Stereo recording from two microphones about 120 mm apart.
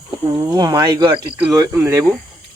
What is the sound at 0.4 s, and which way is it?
Speech, 35° right (ahead or behind).